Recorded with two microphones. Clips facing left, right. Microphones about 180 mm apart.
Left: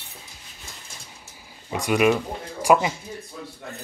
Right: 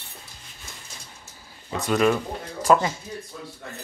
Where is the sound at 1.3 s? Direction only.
15° left (ahead or behind).